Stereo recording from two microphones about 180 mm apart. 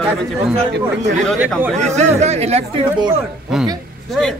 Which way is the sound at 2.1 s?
35° right (ahead or behind).